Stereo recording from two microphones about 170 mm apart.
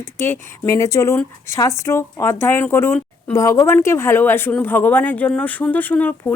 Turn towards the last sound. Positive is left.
turn(degrees=10)  # may be behind; listen again after turning